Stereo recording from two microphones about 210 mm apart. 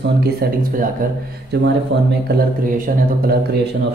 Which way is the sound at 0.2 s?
45° right (ahead or behind).